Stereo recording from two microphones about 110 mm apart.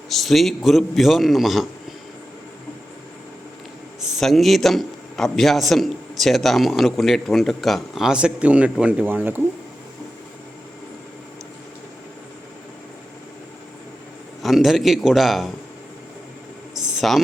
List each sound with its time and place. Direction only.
0.1 s a man's voice: centre (ahead or behind)
4.0 s a man's voice: centre (ahead or behind); by 9.4 s 20° right (ahead or behind)
14.4 s a man's voice: centre (ahead or behind)
16.7 s a sound: centre (ahead or behind)